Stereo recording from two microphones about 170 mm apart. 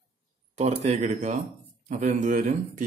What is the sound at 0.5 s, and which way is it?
Speech, 40° right (ahead or behind).